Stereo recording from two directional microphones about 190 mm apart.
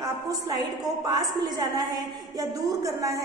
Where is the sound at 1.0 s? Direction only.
20° right (ahead or behind).